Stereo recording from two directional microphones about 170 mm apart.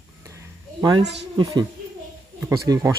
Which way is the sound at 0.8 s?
20° right (ahead or behind).